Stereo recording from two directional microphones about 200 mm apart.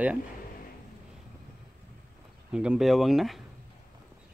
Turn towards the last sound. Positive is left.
turn(degrees=0)  # may be behind; listen again after turning